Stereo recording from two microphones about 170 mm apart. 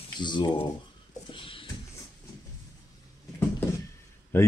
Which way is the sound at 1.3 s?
30° left (ahead or behind).